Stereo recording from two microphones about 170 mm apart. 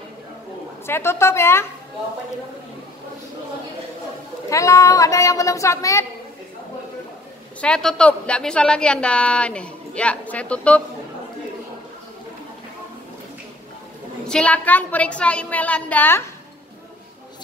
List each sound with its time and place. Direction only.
0.8 s a woman's voice: 15° left (ahead or behind)
4.5 s a woman's voice: 20° left (ahead or behind)
7.6 s a woman's voice: 5° left (ahead or behind)
14.2 s a woman's voice: 5° left (ahead or behind)